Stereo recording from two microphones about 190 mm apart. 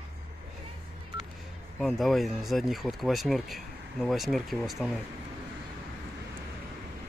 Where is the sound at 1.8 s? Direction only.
Centre (ahead or behind).